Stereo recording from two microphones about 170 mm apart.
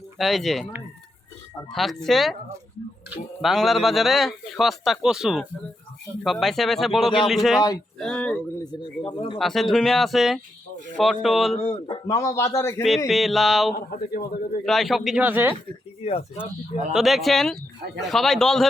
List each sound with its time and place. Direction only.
0.2 s a man's voice: centre (ahead or behind)
1.7 s a man's voice: centre (ahead or behind)
3.4 s a man's voice: centre (ahead or behind)
7.9 s a sound: 5° left (ahead or behind)
8.6 s a man's voice: 25° left (ahead or behind)
9.4 s a man's voice: centre (ahead or behind)
11.5 s speech: 30° left (ahead or behind)
12.0 s a man's voice: 20° left (ahead or behind)
13.1 s a man's voice: centre (ahead or behind)
13.7 s a man's voice: 60° left (ahead or behind)
14.6 s a man's voice: centre (ahead or behind)
16.0 s speech: 40° left (ahead or behind)
16.9 s a man's voice: centre (ahead or behind)